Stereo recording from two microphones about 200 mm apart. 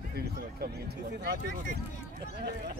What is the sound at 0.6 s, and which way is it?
Speech, 50° right (ahead or behind).